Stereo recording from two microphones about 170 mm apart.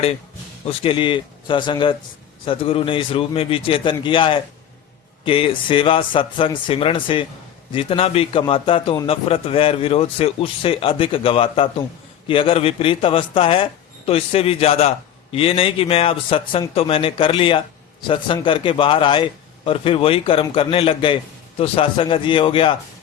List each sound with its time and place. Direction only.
0.7 s speech: 35° left (ahead or behind)